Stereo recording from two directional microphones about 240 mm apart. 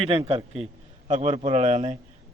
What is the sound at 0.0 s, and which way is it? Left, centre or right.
A man's voice, right.